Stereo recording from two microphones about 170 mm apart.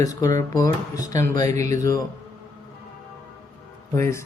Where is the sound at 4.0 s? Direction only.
15° left (ahead or behind).